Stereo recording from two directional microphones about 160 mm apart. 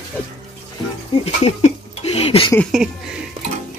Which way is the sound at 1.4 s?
40° left (ahead or behind).